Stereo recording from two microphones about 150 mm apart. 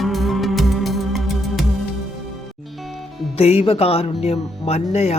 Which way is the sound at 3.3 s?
40° left (ahead or behind).